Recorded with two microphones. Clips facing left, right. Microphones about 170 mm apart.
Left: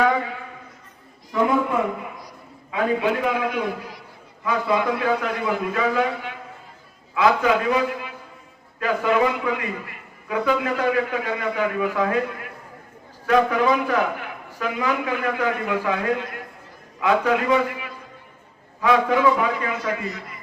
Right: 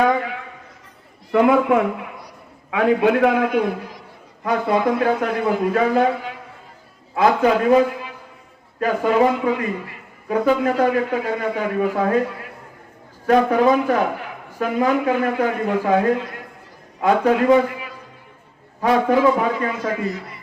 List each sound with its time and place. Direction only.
1.3 s a man's voice: 70° right (ahead or behind)
4.4 s a man's voice: 50° right (ahead or behind)
13.2 s a man's voice: 40° right (ahead or behind)
18.8 s a man's voice: 40° right (ahead or behind)